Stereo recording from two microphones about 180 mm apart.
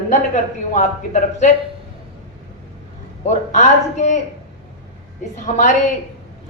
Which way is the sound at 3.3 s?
40° left (ahead or behind).